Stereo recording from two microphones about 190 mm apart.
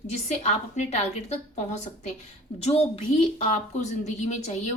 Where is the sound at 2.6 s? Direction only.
30° left (ahead or behind).